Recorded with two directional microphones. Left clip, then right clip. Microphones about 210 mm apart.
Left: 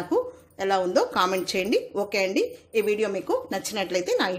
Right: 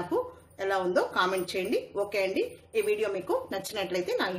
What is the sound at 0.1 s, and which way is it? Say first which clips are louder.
A woman's voice: left 9 dB; 35° left (ahead or behind).